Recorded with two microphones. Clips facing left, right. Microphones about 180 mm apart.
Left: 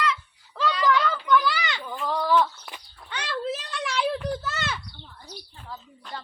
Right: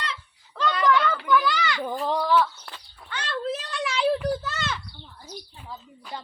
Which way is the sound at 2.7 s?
15° left (ahead or behind).